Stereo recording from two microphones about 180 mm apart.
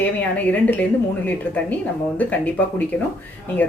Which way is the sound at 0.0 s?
10° left (ahead or behind).